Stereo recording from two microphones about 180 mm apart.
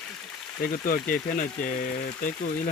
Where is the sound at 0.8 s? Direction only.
50° left (ahead or behind).